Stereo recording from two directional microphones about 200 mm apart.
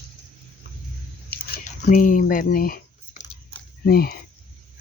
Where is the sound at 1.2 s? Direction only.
50° left (ahead or behind).